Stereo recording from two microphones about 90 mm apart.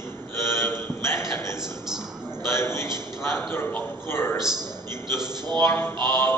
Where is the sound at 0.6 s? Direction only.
30° left (ahead or behind).